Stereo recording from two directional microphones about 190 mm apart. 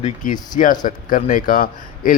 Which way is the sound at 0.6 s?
45° left (ahead or behind).